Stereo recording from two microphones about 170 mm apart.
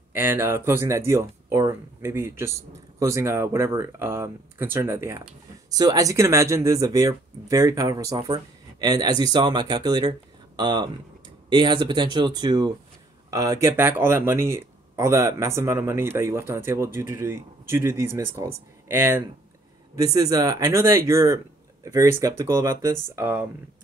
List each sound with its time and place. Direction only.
0.1 s speech: 10° right (ahead or behind)